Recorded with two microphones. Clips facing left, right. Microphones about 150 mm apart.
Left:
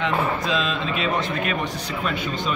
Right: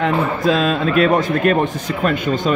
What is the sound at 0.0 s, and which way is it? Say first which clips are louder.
A man's voice: right 6 dB; 50° right (ahead or behind).